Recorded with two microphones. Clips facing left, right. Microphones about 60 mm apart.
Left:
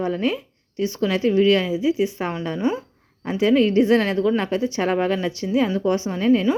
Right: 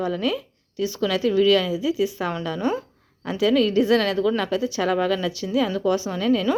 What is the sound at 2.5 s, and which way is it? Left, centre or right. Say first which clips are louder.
Speech: left 2 dB; centre.